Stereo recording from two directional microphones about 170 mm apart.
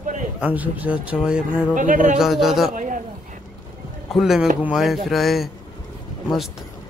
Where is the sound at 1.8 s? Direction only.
50° right (ahead or behind).